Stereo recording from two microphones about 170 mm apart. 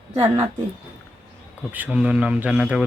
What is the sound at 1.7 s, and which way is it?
Speech, 10° right (ahead or behind).